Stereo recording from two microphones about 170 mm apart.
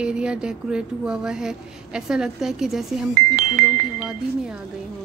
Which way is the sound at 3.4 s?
50° right (ahead or behind).